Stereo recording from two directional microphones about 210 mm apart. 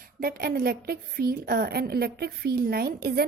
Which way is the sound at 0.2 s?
45° right (ahead or behind).